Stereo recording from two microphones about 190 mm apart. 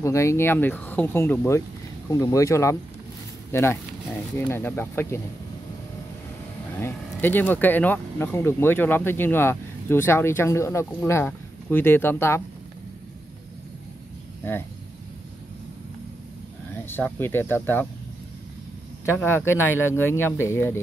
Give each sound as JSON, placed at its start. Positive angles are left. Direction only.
{"t": 0.0, "sound": "speech", "side_deg": 15}
{"t": 6.8, "sound": "speech", "side_deg": 10}
{"t": 16.8, "sound": "speech", "side_deg": 10}
{"t": 19.1, "sound": "speech", "side_deg": 10}